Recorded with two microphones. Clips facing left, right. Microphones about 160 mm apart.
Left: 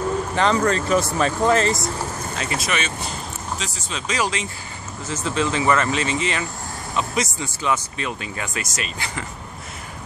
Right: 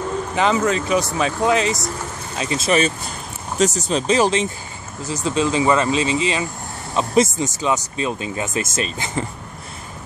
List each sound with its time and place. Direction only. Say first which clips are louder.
0.4 s speech: right 2 dB; 5° right (ahead or behind)
2.3 s speech: right 8 dB; 20° right (ahead or behind)
3.5 s speech: right 17 dB; 45° right (ahead or behind)
5.0 s speech: right 3 dB; 15° right (ahead or behind)